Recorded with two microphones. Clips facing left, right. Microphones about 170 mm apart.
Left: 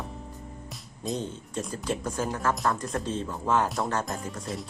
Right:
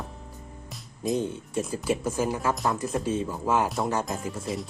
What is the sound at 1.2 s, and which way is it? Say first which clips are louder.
Speech: right 4 dB; 10° right (ahead or behind).